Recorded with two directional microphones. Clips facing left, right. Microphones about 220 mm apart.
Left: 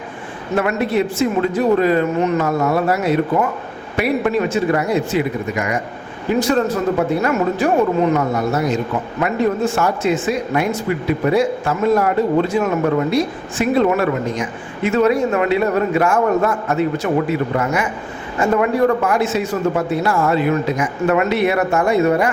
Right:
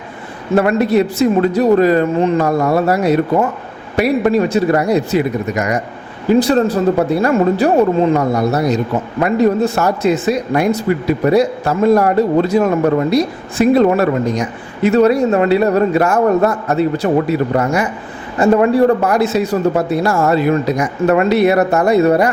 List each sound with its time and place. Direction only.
0.5 s a man's voice: 35° right (ahead or behind)